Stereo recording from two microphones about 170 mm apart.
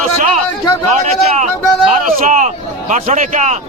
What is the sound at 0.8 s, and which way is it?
Speech, 40° right (ahead or behind).